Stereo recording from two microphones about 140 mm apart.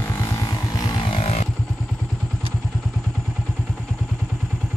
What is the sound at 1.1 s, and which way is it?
Vehicle, 45° left (ahead or behind).